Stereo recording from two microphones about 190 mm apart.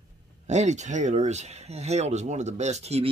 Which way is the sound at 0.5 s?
40° right (ahead or behind).